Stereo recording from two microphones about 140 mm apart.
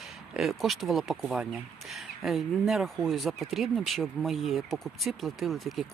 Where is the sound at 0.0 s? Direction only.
Centre (ahead or behind).